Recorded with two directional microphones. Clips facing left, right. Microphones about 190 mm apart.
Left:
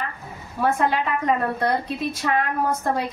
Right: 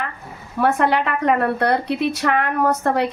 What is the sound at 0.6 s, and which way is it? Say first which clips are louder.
A woman's voice: right 4 dB; 70° right (ahead or behind).